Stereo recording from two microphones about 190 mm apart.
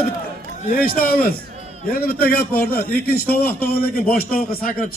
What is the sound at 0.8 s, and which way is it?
Speech, 50° left (ahead or behind).